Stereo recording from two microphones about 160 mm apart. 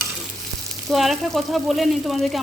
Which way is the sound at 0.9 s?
Centre (ahead or behind).